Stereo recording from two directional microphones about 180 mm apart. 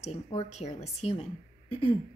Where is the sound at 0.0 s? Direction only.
35° left (ahead or behind).